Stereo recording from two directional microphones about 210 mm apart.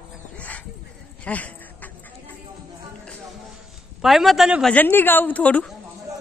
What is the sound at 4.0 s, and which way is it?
Speech, centre (ahead or behind).